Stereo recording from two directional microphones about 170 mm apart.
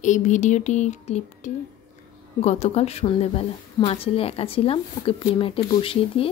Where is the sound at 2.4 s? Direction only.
40° left (ahead or behind).